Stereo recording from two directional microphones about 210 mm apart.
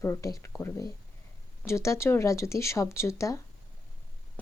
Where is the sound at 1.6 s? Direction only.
15° left (ahead or behind).